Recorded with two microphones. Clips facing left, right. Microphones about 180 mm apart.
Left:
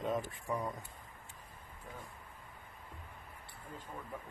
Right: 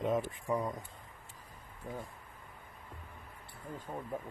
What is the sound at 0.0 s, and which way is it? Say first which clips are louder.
Speech: right 4 dB; 20° right (ahead or behind).